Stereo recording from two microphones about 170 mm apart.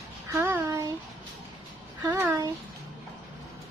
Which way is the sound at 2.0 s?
15° right (ahead or behind).